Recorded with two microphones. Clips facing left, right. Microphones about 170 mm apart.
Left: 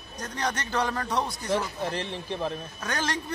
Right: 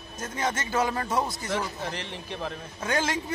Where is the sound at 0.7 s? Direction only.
5° right (ahead or behind).